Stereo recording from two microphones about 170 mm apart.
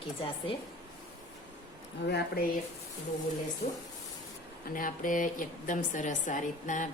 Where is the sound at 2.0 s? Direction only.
75° left (ahead or behind).